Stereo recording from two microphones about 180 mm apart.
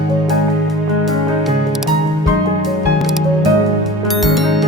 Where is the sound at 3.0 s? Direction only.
Centre (ahead or behind).